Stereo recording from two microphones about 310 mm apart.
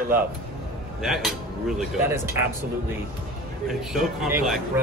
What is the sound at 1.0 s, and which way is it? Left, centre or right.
Speech, centre.